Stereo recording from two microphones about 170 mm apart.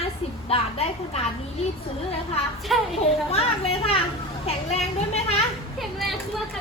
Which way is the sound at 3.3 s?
35° left (ahead or behind).